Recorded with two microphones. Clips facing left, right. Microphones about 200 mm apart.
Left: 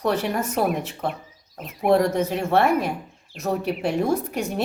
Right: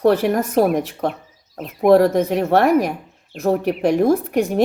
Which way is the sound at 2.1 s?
60° right (ahead or behind).